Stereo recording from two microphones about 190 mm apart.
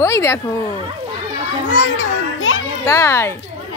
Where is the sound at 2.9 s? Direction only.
15° left (ahead or behind).